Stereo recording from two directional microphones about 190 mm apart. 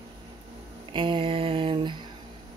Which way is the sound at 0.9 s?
25° right (ahead or behind).